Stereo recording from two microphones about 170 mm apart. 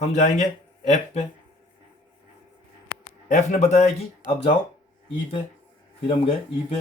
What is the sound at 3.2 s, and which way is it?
Speech, 45° left (ahead or behind).